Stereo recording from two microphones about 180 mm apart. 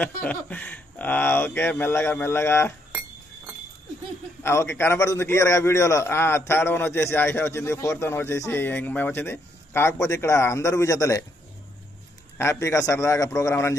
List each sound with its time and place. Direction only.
0.0 s a man's voice: 10° left (ahead or behind)
4.4 s a man's voice: 15° left (ahead or behind)
12.4 s a man's voice: 15° left (ahead or behind)